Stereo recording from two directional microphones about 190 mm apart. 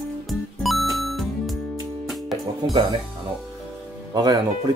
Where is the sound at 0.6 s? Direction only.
Centre (ahead or behind).